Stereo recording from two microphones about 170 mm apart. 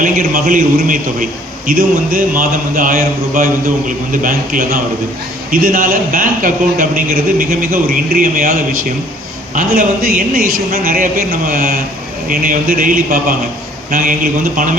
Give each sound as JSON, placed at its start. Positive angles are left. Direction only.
{"t": 0.0, "sound": "a man's voice", "side_deg": -55}